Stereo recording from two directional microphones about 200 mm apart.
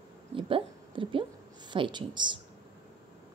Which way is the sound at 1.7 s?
25° right (ahead or behind).